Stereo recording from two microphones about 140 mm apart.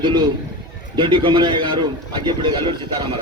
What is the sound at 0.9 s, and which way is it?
Speech, 35° right (ahead or behind).